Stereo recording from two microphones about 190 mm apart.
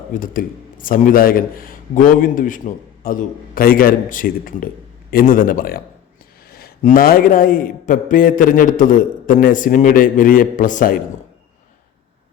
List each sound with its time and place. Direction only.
0.1 s a man's voice: 45° left (ahead or behind)